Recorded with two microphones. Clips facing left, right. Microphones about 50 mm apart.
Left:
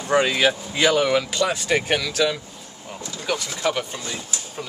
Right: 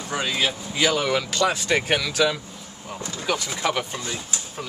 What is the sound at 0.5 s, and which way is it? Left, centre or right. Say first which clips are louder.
Speech: left 3 dB; left.